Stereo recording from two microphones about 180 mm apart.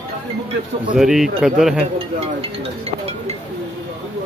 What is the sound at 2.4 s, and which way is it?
Speech, 35° right (ahead or behind).